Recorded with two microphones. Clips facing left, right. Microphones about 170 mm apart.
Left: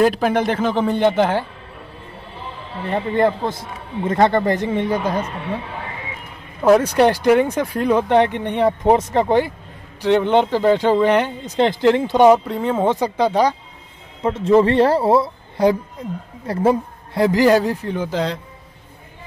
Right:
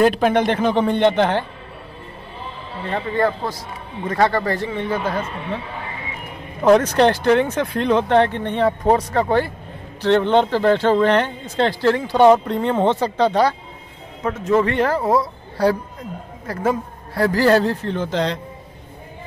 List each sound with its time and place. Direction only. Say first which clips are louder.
0.0 s speech: right 1 dB; centre (ahead or behind)
2.9 s speech: left 3 dB; 20° left (ahead or behind)
6.6 s speech: even; 10° left (ahead or behind)
12.3 s speech: even; 5° left (ahead or behind)
14.2 s speech: left 4 dB; 30° left (ahead or behind); by 18.4 s 5° left (ahead or behind)